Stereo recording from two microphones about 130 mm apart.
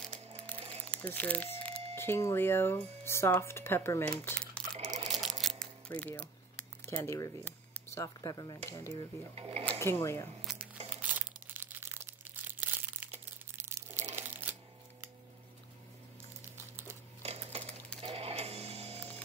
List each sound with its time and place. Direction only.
0.7 s crumpling: 10° left (ahead or behind)
2.0 s speech: 20° left (ahead or behind)
4.2 s crumpling: 10° left (ahead or behind)
5.0 s a sound: centre (ahead or behind)
5.9 s speech: 15° left (ahead or behind)
9.3 s speech: 45° right (ahead or behind)
9.8 s speech: 20° left (ahead or behind)
10.4 s crumpling: 5° right (ahead or behind)
14.1 s a sound: 15° right (ahead or behind)
16.5 s crumpling: 20° right (ahead or behind)
17.2 s a sound: 50° right (ahead or behind)
18.0 s music: 50° right (ahead or behind)